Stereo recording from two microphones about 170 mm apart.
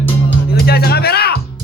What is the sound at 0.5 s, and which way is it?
Music, 65° left (ahead or behind).